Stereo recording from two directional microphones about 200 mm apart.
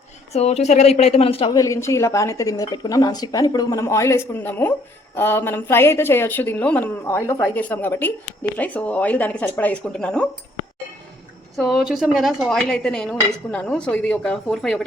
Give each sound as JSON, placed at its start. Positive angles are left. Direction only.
{"t": 0.3, "sound": "speech", "side_deg": 35}
{"t": 11.5, "sound": "speech", "side_deg": 0}